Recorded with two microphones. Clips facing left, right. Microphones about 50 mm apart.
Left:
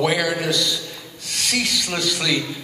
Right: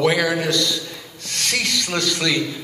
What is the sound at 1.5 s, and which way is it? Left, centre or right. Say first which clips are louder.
Speech: right 1 dB; centre.